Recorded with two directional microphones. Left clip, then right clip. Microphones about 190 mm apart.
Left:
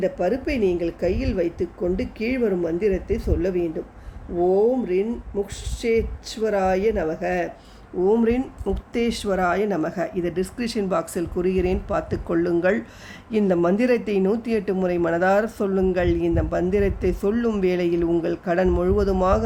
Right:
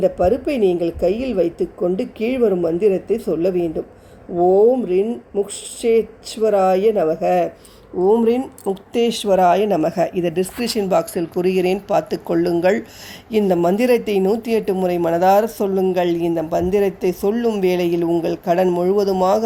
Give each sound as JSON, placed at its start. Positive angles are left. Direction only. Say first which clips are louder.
{"t": 0.0, "sound": "a woman's voice", "louder": "right 6 dB", "side_deg": -15}